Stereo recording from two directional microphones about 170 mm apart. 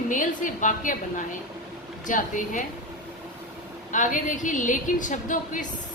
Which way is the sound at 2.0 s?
50° left (ahead or behind).